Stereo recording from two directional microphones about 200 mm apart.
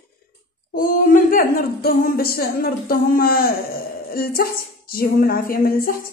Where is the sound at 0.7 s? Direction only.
45° left (ahead or behind).